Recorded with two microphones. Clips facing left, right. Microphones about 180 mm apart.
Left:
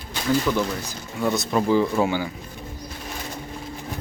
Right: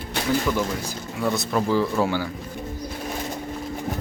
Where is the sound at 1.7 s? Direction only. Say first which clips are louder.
Left 3 dB; 15° left (ahead or behind).